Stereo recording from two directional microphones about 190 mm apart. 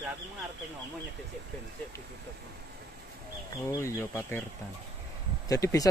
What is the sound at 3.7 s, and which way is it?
Speech, 15° left (ahead or behind).